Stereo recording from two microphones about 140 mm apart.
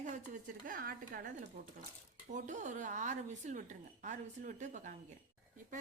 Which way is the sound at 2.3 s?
60° right (ahead or behind).